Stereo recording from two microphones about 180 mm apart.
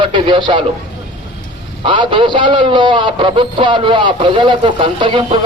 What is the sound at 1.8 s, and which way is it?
A man's voice, 25° right (ahead or behind).